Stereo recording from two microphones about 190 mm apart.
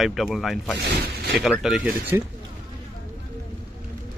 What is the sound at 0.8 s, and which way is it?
Speech, 60° right (ahead or behind).